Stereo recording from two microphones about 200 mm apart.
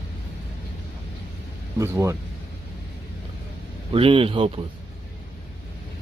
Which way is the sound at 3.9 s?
25° right (ahead or behind).